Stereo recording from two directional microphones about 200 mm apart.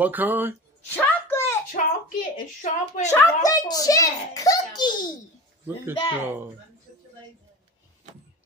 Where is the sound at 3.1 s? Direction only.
15° left (ahead or behind).